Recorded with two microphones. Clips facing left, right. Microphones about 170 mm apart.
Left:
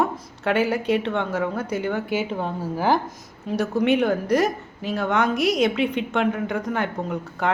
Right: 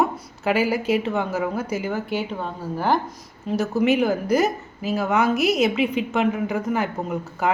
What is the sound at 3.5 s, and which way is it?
A woman's voice, centre (ahead or behind).